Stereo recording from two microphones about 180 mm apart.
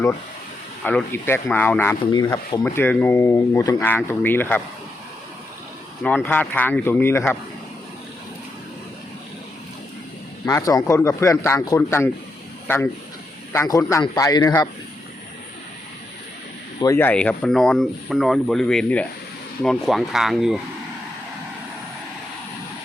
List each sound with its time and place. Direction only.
0.9 s speech: 10° left (ahead or behind)
2.0 s speech: 25° left (ahead or behind)
6.0 s speech: centre (ahead or behind)
10.4 s a man's voice: 15° left (ahead or behind)
16.8 s speech: 15° left (ahead or behind); by 20.6 s centre (ahead or behind)